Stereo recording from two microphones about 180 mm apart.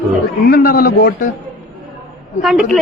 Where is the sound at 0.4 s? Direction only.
55° left (ahead or behind).